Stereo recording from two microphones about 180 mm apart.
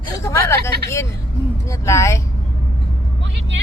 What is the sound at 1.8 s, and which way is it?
Speech, 15° left (ahead or behind).